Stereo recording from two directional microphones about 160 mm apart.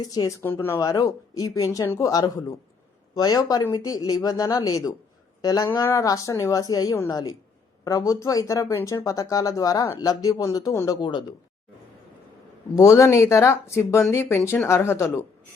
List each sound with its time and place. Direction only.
0.0 s speech: 25° left (ahead or behind)
12.7 s speech: 20° left (ahead or behind)